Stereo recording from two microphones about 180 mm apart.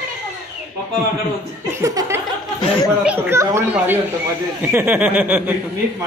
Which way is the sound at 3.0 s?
10° right (ahead or behind).